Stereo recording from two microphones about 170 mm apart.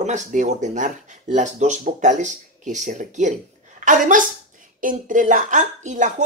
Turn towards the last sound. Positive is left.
turn(degrees=-45)  # may be behind; listen again after turning